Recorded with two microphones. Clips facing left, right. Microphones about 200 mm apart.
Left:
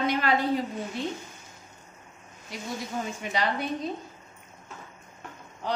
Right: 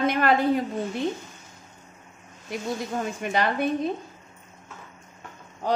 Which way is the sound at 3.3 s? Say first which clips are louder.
Right 5 dB; 55° right (ahead or behind).